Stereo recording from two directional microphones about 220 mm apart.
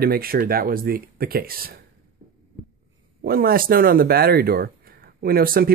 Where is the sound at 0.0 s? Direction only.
45° right (ahead or behind).